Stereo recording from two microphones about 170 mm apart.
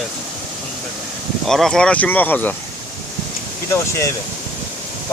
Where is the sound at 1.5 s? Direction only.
Centre (ahead or behind).